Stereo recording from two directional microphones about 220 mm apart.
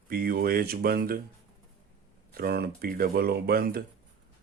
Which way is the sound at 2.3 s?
45° right (ahead or behind).